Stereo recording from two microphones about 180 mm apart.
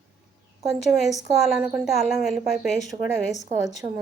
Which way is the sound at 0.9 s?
Centre (ahead or behind).